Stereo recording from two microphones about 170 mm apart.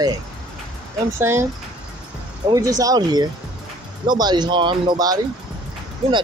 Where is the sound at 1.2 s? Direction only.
15° right (ahead or behind).